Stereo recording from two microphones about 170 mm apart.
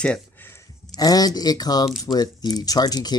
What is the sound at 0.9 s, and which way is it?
Speech, 20° left (ahead or behind).